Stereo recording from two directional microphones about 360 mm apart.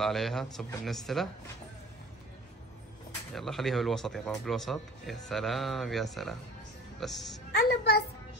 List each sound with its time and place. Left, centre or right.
0.0 s speech: centre
3.3 s speech: centre
7.5 s a woman's voice: left